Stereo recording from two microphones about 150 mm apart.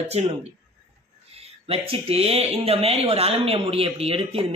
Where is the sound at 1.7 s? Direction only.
40° right (ahead or behind).